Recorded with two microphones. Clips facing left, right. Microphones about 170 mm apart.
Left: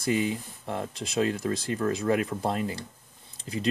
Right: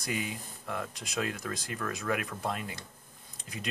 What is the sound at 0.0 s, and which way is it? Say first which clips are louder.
Speech: left 9 dB; 30° left (ahead or behind).